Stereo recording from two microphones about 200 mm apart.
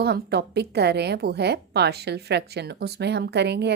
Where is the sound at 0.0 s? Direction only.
55° right (ahead or behind).